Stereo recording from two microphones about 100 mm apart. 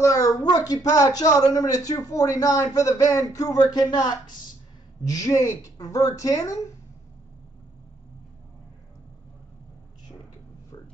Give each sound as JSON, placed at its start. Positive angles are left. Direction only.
{"t": 0.0, "sound": "a man's voice", "side_deg": 30}
{"t": 5.0, "sound": "a man's voice", "side_deg": 35}